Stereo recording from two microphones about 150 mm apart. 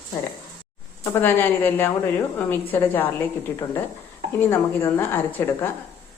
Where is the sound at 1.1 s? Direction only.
15° left (ahead or behind).